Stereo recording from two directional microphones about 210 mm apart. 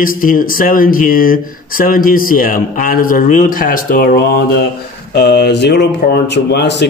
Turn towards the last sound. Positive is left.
turn(degrees=55)  # may be behind; listen again after turning